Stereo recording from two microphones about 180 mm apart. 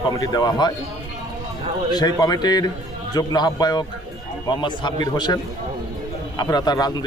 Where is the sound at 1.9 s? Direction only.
20° left (ahead or behind).